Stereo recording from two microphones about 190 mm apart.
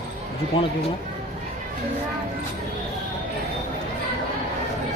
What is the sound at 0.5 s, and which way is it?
Speech, 30° left (ahead or behind).